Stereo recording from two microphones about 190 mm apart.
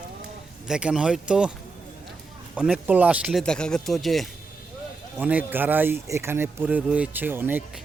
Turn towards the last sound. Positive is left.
turn(degrees=-10)  # may be behind; listen again after turning